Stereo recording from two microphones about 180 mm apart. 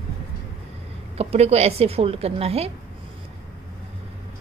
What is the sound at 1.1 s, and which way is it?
A woman's voice, 35° right (ahead or behind).